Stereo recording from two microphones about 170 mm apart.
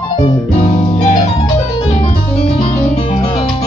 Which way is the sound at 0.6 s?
40° left (ahead or behind).